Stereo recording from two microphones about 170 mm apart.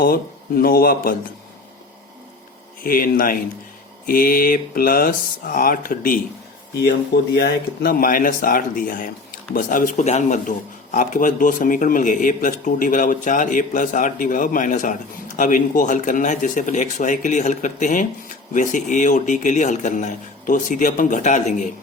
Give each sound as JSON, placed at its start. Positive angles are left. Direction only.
{"t": 0.0, "sound": "speech", "side_deg": 60}
{"t": 2.8, "sound": "speech", "side_deg": 55}
{"t": 7.3, "sound": "a man's voice", "side_deg": 65}